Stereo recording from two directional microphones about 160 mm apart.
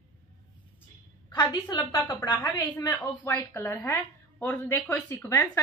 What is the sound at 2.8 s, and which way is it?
A woman's voice, 15° left (ahead or behind).